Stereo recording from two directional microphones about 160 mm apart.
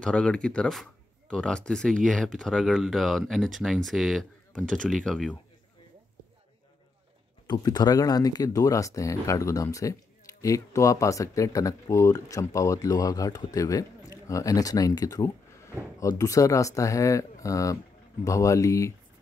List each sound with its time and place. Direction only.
0.0 s speech: 5° left (ahead or behind)
7.4 s speech: 25° left (ahead or behind)